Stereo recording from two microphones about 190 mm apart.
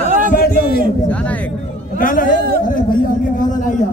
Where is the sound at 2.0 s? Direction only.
45° left (ahead or behind).